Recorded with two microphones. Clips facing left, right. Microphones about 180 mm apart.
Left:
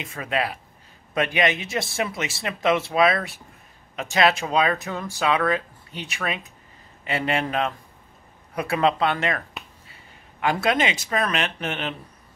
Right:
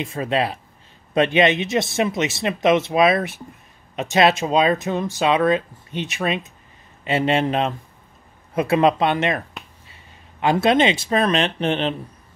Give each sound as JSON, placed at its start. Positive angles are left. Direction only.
{"t": 0.0, "sound": "speech", "side_deg": -30}
{"t": 10.4, "sound": "speech", "side_deg": -25}